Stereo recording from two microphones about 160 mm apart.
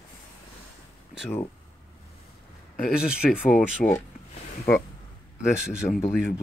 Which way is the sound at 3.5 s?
10° left (ahead or behind).